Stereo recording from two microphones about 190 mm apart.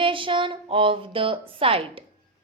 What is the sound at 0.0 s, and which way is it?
A woman's voice, 25° right (ahead or behind).